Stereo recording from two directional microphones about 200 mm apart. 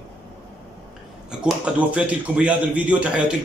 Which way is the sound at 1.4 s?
5° right (ahead or behind).